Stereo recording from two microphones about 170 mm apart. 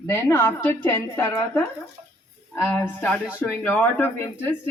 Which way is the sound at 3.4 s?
10° left (ahead or behind).